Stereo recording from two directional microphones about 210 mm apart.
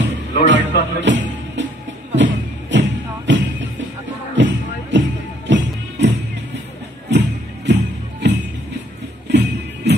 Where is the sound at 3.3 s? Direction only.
60° right (ahead or behind).